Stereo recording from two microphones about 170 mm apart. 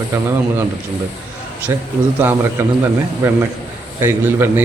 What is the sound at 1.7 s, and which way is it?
A man's voice, 15° right (ahead or behind).